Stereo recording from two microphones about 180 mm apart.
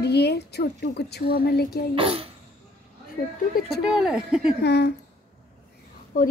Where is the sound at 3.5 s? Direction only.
55° left (ahead or behind).